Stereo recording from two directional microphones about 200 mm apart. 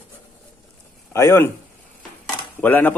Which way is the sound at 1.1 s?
15° left (ahead or behind).